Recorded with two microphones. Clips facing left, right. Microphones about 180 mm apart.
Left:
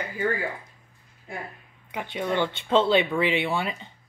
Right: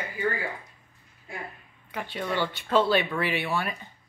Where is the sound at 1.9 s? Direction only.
20° left (ahead or behind).